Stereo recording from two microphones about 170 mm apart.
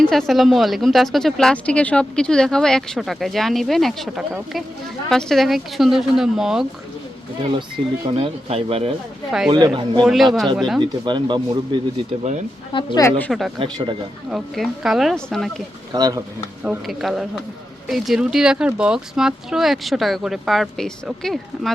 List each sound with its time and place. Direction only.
0.0 s a woman's voice: centre (ahead or behind)
8.0 s speech: 30° right (ahead or behind)
10.0 s a woman's voice: centre (ahead or behind)
10.8 s speech: 25° right (ahead or behind)
12.7 s speech: 25° left (ahead or behind)
13.1 s speech: 10° left (ahead or behind)
13.6 s speech: 30° right (ahead or behind)
14.3 s a woman's voice: centre (ahead or behind)
15.9 s speech: 20° right (ahead or behind)
16.6 s a woman's voice: centre (ahead or behind)